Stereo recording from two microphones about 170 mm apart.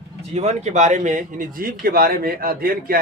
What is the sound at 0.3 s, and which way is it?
Speech, 40° right (ahead or behind).